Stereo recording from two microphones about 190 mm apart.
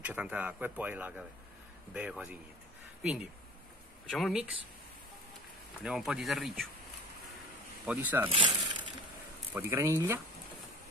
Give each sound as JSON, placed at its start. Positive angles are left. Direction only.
{"t": 0.0, "sound": "speech", "side_deg": -10}
{"t": 5.8, "sound": "speech", "side_deg": -5}
{"t": 7.8, "sound": "speech", "side_deg": -5}
{"t": 8.3, "sound": "speech", "side_deg": -25}
{"t": 9.5, "sound": "speech", "side_deg": -10}